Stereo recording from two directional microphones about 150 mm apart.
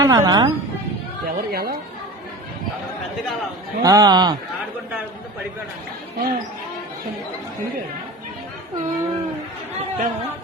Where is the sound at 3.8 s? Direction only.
25° right (ahead or behind).